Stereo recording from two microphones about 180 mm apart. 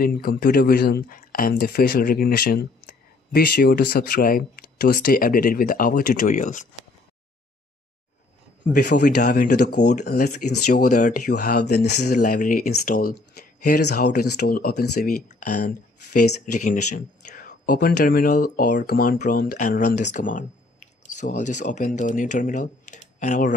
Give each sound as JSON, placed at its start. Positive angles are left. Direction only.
{"t": 0.0, "sound": "speech", "side_deg": 55}
{"t": 8.7, "sound": "speech", "side_deg": 70}
{"t": 9.0, "sound": "speech", "side_deg": 50}
{"t": 11.2, "sound": "speech", "side_deg": 60}
{"t": 16.5, "sound": "speech", "side_deg": 45}
{"t": 20.0, "sound": "speech", "side_deg": 45}